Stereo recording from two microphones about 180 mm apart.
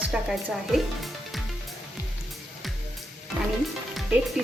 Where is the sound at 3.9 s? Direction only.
5° right (ahead or behind).